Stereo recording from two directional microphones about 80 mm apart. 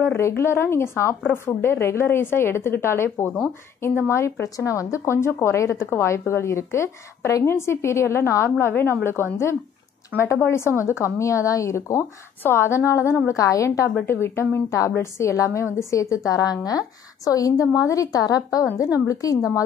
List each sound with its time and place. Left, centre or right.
0.0 s a woman's voice: left
11.1 s a woman's voice: left